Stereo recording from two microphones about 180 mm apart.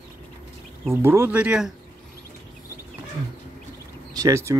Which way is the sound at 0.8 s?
15° right (ahead or behind).